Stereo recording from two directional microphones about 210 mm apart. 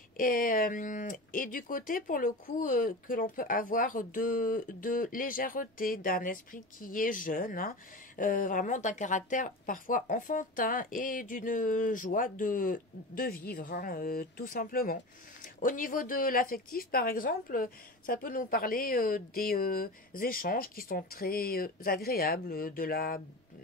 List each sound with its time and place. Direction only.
0.2 s speech: 40° left (ahead or behind)